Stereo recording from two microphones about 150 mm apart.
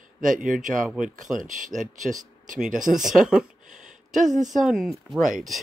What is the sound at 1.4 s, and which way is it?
Speech, 60° right (ahead or behind).